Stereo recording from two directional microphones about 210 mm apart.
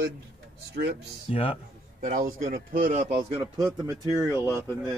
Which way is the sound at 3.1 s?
20° right (ahead or behind).